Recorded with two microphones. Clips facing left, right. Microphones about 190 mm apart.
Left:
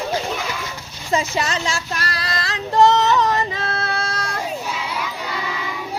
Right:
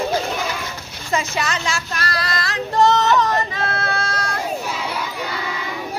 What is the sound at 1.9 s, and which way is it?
Child singing, 40° right (ahead or behind).